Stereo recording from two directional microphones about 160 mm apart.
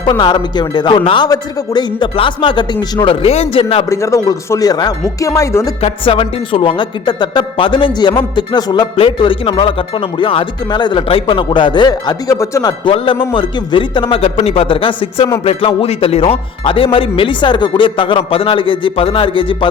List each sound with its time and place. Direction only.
0.0 s speech: 30° left (ahead or behind)
3.8 s speech: 20° left (ahead or behind)
5.8 s speech: 35° left (ahead or behind)
12.8 s speech: 30° left (ahead or behind)